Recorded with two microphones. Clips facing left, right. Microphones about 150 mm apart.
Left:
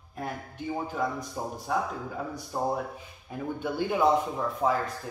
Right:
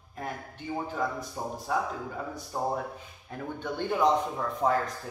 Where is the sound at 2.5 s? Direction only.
10° left (ahead or behind).